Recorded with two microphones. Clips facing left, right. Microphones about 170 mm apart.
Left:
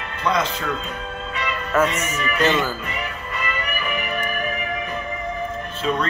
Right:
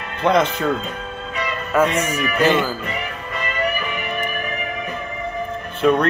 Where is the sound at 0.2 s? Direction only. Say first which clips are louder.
Right 5 dB; 55° right (ahead or behind).